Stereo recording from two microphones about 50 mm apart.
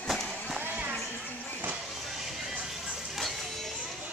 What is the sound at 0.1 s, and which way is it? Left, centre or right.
Music, centre.